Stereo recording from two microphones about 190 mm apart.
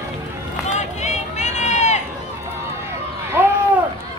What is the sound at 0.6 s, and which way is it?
Run, 35° left (ahead or behind).